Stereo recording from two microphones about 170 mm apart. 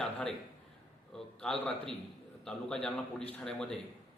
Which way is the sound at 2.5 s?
5° left (ahead or behind).